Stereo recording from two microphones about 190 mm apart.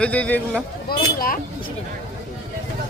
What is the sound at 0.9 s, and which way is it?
Speech, 50° left (ahead or behind).